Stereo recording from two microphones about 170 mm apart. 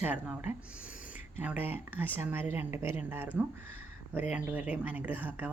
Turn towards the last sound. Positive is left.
turn(degrees=-10)  # may be behind; listen again after turning